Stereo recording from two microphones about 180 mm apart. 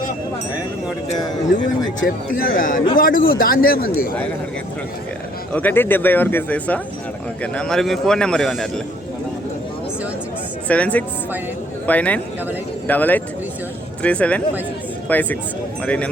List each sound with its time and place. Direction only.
2.0 s a man's voice: 50° left (ahead or behind)
5.5 s a man's voice: 10° left (ahead or behind)
10.7 s speech: 10° left (ahead or behind)